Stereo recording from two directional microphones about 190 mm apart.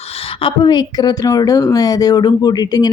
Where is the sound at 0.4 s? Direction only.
20° left (ahead or behind).